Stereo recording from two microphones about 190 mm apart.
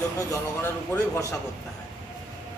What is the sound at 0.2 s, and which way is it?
Speech, 15° left (ahead or behind).